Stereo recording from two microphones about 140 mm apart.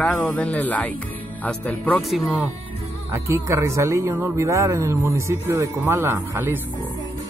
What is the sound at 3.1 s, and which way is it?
A man's voice, 20° right (ahead or behind).